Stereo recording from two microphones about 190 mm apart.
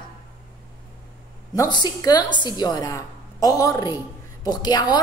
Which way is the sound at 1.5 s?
20° left (ahead or behind).